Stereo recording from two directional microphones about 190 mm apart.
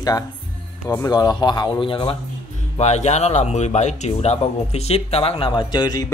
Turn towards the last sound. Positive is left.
turn(degrees=20)  # may be behind; listen again after turning